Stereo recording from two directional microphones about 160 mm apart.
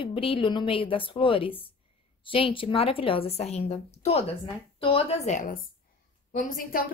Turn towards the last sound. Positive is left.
turn(degrees=60)  # may be behind; listen again after turning